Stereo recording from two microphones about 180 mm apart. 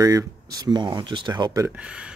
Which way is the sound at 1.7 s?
5° right (ahead or behind).